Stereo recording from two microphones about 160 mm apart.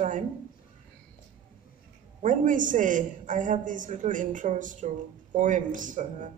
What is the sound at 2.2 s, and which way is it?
A man's voice, 55° right (ahead or behind).